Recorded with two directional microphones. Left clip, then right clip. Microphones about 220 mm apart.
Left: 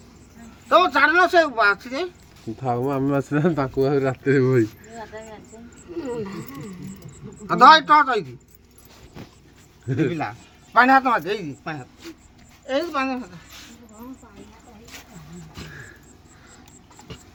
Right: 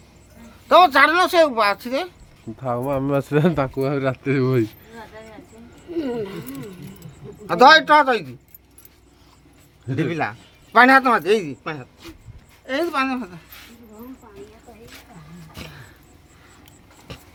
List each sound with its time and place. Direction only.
0.7 s a man's voice: 45° right (ahead or behind)
2.6 s speech: centre (ahead or behind); by 3.7 s 20° right (ahead or behind)
3.8 s speech: 10° right (ahead or behind)
7.4 s a man's voice: 50° right (ahead or behind)
9.8 s speech: centre (ahead or behind)
10.1 s a man's voice: 50° right (ahead or behind)